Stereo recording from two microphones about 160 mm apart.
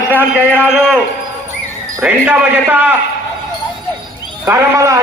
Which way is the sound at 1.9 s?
10° right (ahead or behind).